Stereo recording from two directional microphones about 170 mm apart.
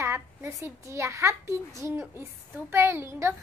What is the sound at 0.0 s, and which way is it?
A child's voice, 15° right (ahead or behind).